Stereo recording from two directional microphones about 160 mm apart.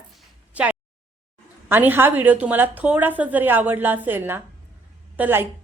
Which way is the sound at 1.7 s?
15° right (ahead or behind).